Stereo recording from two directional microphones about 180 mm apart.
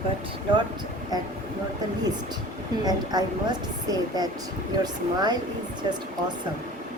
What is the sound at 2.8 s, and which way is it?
A woman's voice, 20° right (ahead or behind).